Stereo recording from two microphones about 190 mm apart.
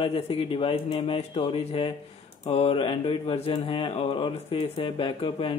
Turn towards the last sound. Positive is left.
turn(degrees=30)  # may be behind; listen again after turning